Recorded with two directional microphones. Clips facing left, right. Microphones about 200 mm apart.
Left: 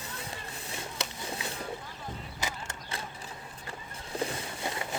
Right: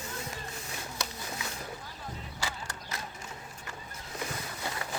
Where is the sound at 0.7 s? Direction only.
30° left (ahead or behind).